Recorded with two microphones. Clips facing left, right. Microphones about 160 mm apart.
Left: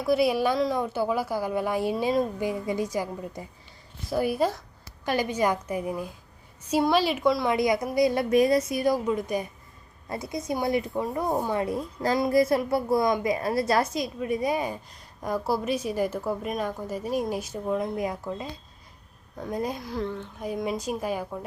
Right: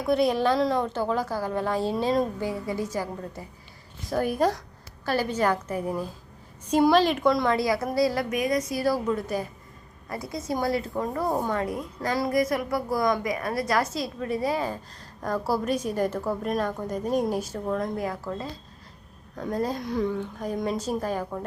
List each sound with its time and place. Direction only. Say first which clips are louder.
0.1 s a woman's voice: even; 5° left (ahead or behind)
7.5 s a woman's voice: left 1 dB; 20° left (ahead or behind)
11.6 s a woman's voice: left 2 dB; 25° left (ahead or behind)